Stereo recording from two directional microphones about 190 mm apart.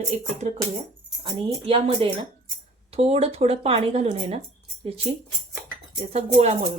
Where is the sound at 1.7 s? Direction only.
25° right (ahead or behind).